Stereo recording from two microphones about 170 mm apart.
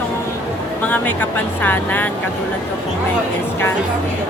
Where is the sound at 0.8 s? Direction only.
10° left (ahead or behind).